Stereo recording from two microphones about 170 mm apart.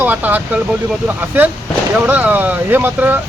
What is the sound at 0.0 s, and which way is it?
Speech, 10° right (ahead or behind).